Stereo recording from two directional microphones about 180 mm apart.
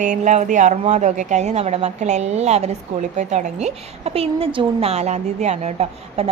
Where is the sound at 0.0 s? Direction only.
45° right (ahead or behind).